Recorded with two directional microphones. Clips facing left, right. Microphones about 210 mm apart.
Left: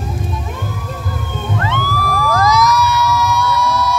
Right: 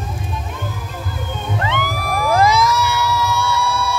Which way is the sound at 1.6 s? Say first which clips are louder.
Left 2 dB; 20° right (ahead or behind).